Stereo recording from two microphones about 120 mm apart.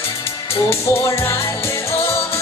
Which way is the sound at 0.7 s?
25° left (ahead or behind).